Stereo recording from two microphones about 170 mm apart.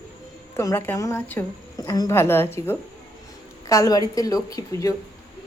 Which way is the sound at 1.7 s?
25° left (ahead or behind).